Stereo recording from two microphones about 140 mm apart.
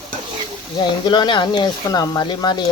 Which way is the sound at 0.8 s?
30° left (ahead or behind).